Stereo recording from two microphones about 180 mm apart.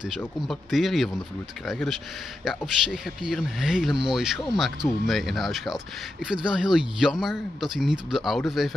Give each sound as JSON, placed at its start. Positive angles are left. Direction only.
{"t": 0.5, "sound": "speech", "side_deg": 0}